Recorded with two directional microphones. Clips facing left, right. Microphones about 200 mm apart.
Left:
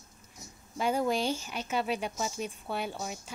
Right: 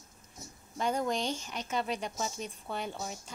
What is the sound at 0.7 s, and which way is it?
A woman's voice, 5° left (ahead or behind).